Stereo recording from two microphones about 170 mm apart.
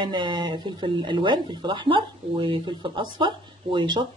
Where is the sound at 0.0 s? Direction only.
25° right (ahead or behind).